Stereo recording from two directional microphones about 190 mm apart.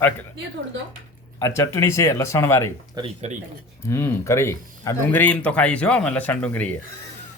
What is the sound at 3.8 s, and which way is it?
Speech, 15° left (ahead or behind).